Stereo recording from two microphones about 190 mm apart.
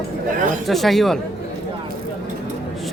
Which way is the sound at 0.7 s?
Centre (ahead or behind).